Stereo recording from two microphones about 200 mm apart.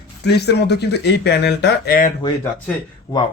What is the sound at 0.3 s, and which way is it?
Speech, 55° left (ahead or behind).